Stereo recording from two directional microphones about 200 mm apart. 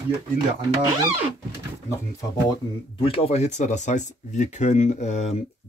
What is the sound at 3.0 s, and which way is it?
Speech, 30° left (ahead or behind).